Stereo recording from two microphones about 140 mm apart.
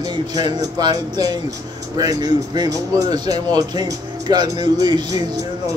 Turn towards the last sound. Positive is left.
turn(degrees=-30)  # may be behind; listen again after turning